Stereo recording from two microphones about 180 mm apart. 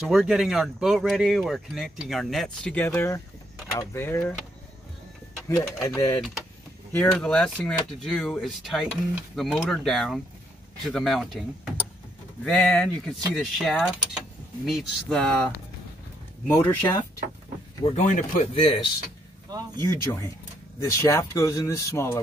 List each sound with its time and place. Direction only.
0.0 s speech: centre (ahead or behind)
5.6 s speech: 20° left (ahead or behind)
6.9 s speech: 5° left (ahead or behind)
16.4 s speech: 15° left (ahead or behind)
17.8 s speech: 40° left (ahead or behind)
19.9 s speech: 15° left (ahead or behind)